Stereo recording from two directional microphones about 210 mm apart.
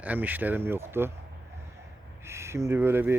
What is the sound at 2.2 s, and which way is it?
Speech, 10° right (ahead or behind).